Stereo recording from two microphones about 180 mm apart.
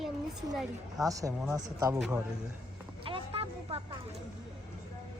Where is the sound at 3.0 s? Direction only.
30° right (ahead or behind).